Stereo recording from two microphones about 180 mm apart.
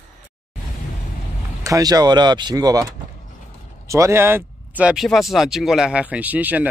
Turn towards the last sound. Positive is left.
turn(degrees=-10)  # may be behind; listen again after turning